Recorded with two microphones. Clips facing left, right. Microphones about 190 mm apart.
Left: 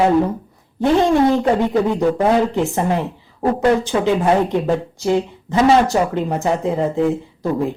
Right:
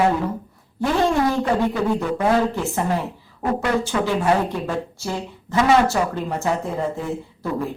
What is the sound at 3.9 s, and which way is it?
Speech, 25° left (ahead or behind).